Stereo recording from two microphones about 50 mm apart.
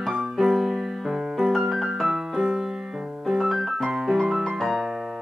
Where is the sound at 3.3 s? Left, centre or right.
Centre.